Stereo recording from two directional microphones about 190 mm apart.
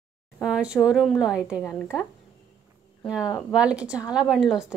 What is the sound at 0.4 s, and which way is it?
A woman's voice, 5° right (ahead or behind).